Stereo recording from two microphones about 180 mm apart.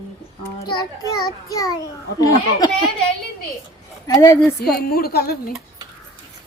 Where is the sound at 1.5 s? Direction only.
20° left (ahead or behind).